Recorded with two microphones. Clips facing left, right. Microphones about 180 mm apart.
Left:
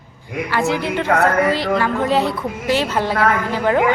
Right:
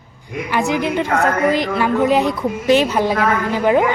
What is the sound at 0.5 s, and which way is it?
A woman's voice, 15° right (ahead or behind).